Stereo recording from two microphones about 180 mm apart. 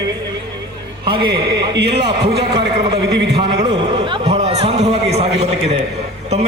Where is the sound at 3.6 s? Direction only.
35° right (ahead or behind).